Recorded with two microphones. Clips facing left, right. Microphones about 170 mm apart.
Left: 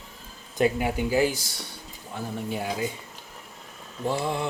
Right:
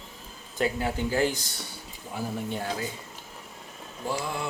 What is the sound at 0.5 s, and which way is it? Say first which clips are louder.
Speech: left 4 dB; 15° left (ahead or behind).